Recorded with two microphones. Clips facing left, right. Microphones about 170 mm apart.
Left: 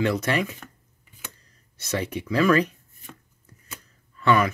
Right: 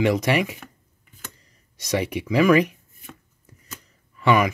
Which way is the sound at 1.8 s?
15° right (ahead or behind).